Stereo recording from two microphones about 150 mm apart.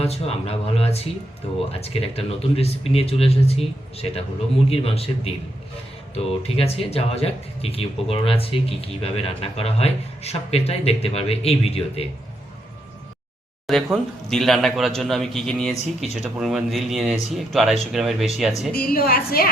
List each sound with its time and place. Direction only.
0.0 s speech: 45° left (ahead or behind)
13.7 s a man's voice: centre (ahead or behind)
18.7 s a woman's voice: 80° left